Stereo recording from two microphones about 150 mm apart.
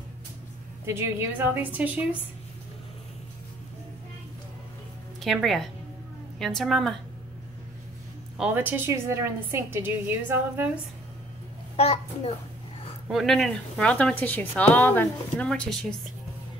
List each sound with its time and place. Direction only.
0.8 s a woman's voice: 15° right (ahead or behind)
5.2 s a woman's voice: centre (ahead or behind)
8.4 s a woman's voice: 10° right (ahead or behind)
11.7 s a child's voice: 45° left (ahead or behind)
13.1 s speech: centre (ahead or behind)